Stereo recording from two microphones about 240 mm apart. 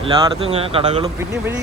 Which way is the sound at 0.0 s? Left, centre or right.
Right.